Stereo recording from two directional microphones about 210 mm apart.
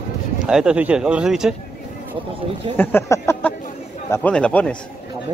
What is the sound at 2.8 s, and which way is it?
Speech, 10° left (ahead or behind).